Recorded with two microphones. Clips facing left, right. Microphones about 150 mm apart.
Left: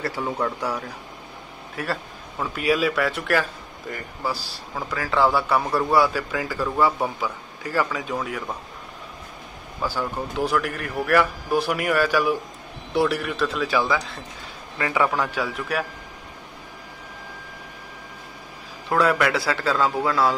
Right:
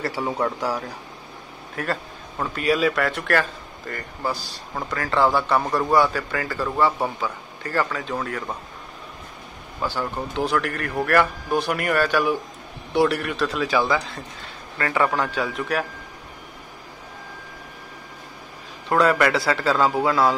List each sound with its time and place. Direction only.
0.4 s a man's voice: centre (ahead or behind)
9.8 s a man's voice: 5° left (ahead or behind)
18.9 s speech: centre (ahead or behind)